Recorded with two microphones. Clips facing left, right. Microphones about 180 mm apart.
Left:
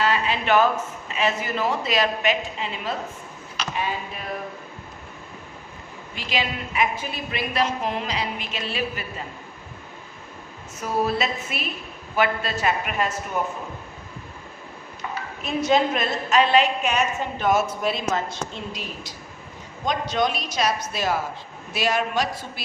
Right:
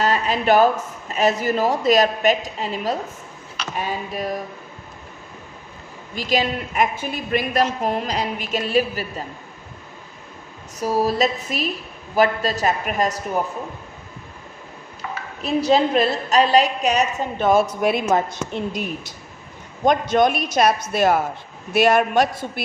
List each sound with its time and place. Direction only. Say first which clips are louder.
0.0 s speech: right 3 dB; 40° right (ahead or behind)
6.1 s a woman's voice: right 6 dB; 40° right (ahead or behind)
10.8 s speech: right 4 dB; 35° right (ahead or behind)
15.4 s speech: right 3 dB; 35° right (ahead or behind)
18.5 s speech: right 8 dB; 55° right (ahead or behind)